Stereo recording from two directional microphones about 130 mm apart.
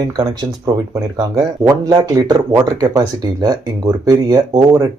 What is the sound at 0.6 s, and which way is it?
Speech, 25° right (ahead or behind).